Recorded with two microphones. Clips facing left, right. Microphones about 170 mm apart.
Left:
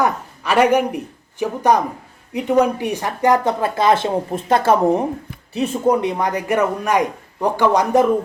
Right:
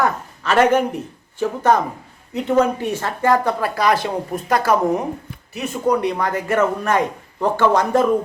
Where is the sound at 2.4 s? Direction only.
15° left (ahead or behind).